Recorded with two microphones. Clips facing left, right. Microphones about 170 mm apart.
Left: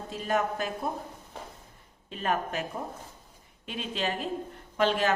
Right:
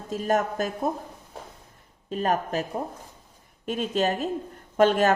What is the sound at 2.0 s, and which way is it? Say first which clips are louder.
A woman's voice: right 5 dB; 40° right (ahead or behind).